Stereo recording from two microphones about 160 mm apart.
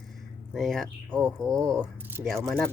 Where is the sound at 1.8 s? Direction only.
10° right (ahead or behind).